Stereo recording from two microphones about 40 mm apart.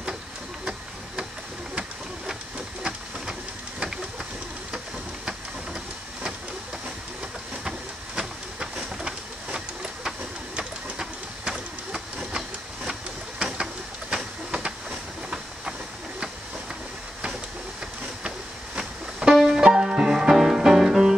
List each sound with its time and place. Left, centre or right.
8.2 s printer: right
10.6 s printer: centre
11.9 s a sound: centre
14.1 s train: right
18.8 s music: right